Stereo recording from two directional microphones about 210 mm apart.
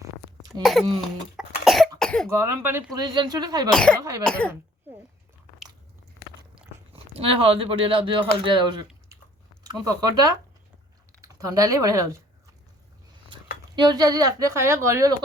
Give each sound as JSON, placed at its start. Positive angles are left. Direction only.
{"t": 0.6, "sound": "cough", "side_deg": 0}
{"t": 2.3, "sound": "speech", "side_deg": -10}
{"t": 3.7, "sound": "cough", "side_deg": 5}
{"t": 6.9, "sound": "speech", "side_deg": -25}
{"t": 13.7, "sound": "speech", "side_deg": -20}